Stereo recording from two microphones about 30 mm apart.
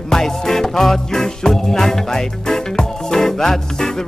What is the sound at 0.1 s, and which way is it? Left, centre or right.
Music, centre.